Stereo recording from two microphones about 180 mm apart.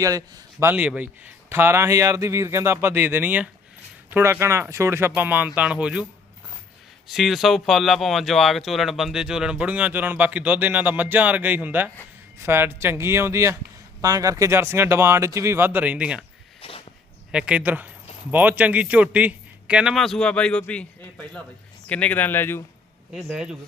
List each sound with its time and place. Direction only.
0.0 s a man's voice: 20° right (ahead or behind)
7.1 s a man's voice: centre (ahead or behind)
16.6 s a sound: 30° left (ahead or behind)
17.3 s a man's voice: 5° right (ahead or behind); by 22.6 s 10° left (ahead or behind)
23.1 s speech: 5° right (ahead or behind)